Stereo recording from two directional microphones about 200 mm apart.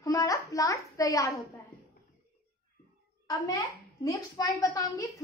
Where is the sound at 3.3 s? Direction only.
20° left (ahead or behind).